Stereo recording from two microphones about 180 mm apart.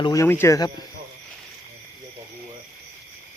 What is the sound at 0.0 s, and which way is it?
Speech, 20° left (ahead or behind).